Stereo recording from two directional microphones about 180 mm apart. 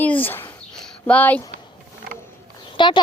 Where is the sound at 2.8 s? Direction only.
25° left (ahead or behind).